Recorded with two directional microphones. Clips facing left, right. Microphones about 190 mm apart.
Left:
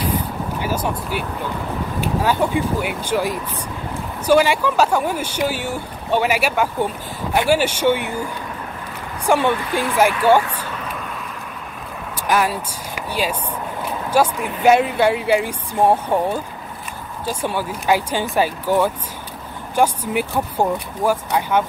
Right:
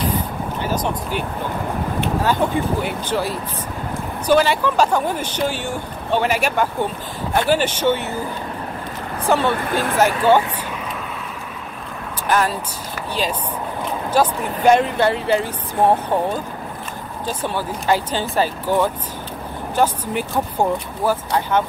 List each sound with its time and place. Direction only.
0.0 s vehicle: 10° left (ahead or behind)
2.2 s speech: 10° left (ahead or behind)
9.2 s speech: 15° left (ahead or behind)
9.6 s speech: 50° right (ahead or behind)
9.9 s speech: 10° left (ahead or behind)
12.3 s speech: 10° left (ahead or behind)